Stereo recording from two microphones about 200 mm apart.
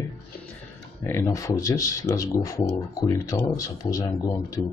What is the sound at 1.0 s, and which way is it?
Speech, 15° left (ahead or behind).